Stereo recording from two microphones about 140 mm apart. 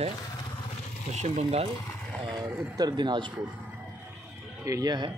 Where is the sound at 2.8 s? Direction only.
30° right (ahead or behind).